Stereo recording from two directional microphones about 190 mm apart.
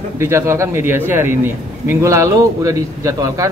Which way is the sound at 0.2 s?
15° right (ahead or behind).